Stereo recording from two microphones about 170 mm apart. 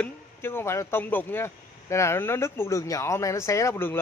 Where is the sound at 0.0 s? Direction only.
15° left (ahead or behind).